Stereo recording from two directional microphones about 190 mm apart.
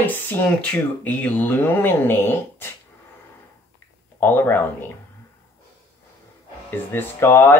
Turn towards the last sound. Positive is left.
turn(degrees=15)  # may be behind; listen again after turning